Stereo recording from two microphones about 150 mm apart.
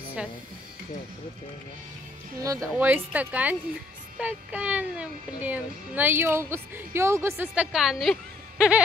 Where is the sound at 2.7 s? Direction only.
10° right (ahead or behind).